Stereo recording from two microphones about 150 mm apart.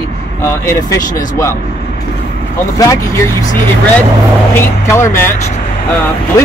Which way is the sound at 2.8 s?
20° left (ahead or behind).